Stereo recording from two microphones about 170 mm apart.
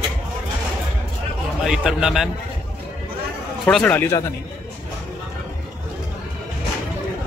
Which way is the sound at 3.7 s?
5° left (ahead or behind).